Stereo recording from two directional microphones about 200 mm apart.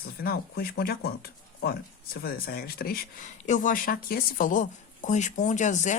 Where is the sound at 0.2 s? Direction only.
50° left (ahead or behind).